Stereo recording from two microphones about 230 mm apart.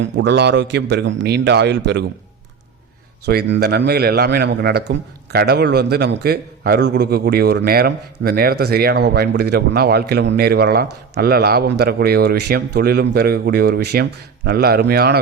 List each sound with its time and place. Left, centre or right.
0.0 s a man's voice: right
3.2 s a man's voice: right